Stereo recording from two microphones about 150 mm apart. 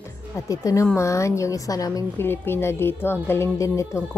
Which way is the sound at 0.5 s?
20° left (ahead or behind).